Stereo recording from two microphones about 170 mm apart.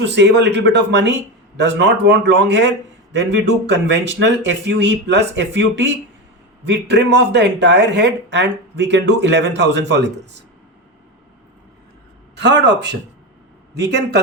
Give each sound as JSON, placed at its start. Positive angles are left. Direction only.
{"t": 0.0, "sound": "speech", "side_deg": -90}
{"t": 12.4, "sound": "a man's voice", "side_deg": -90}